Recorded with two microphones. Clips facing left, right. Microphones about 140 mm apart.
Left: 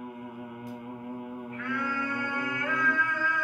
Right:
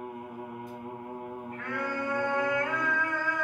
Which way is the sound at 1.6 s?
40° right (ahead or behind).